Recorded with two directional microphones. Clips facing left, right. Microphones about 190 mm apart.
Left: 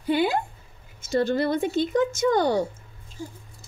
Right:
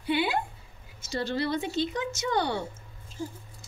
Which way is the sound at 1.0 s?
50° left (ahead or behind).